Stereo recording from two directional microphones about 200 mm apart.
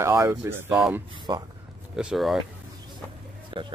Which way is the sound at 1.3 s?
20° right (ahead or behind).